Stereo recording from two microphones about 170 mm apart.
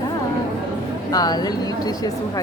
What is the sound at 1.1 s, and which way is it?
Speech, 25° left (ahead or behind).